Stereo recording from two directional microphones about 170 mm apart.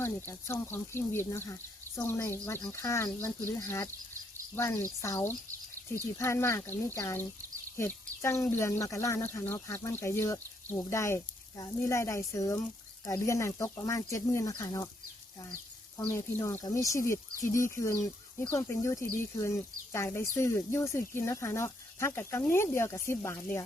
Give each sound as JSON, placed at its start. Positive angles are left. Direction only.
{"t": 0.0, "sound": "speech", "side_deg": 10}
{"t": 16.0, "sound": "speech", "side_deg": 15}